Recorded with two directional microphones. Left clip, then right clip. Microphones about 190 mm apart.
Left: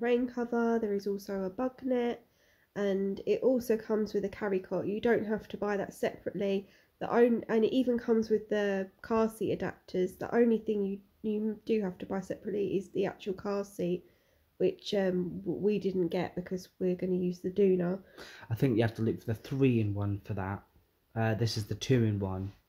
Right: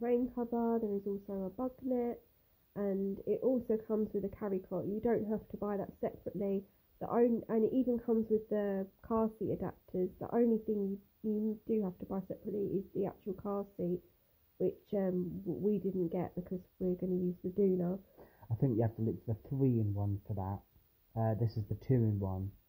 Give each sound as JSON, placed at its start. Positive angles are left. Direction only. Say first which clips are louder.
{"t": 0.0, "sound": "speech", "louder": "left 4 dB", "side_deg": 0}
{"t": 1.0, "sound": "speech", "louder": "left 5 dB", "side_deg": 15}
{"t": 1.9, "sound": "speech", "louder": "left 4 dB", "side_deg": 5}